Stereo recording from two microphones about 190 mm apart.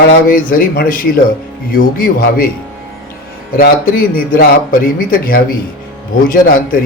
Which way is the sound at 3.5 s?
50° left (ahead or behind).